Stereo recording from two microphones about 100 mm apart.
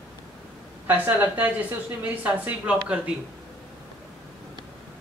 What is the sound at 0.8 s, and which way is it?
A woman's voice, 20° right (ahead or behind).